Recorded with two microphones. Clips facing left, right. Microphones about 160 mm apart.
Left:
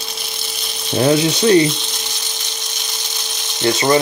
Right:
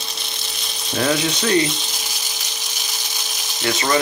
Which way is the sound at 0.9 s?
30° left (ahead or behind).